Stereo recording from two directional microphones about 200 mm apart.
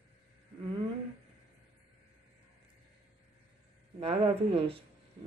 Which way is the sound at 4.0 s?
30° right (ahead or behind).